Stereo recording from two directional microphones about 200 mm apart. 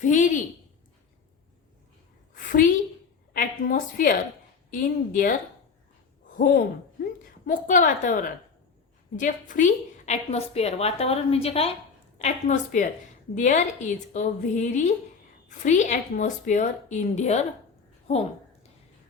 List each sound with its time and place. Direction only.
0.0 s a woman's voice: 40° left (ahead or behind)
2.3 s a sound: 45° left (ahead or behind)
4.7 s a woman's voice: 45° left (ahead or behind)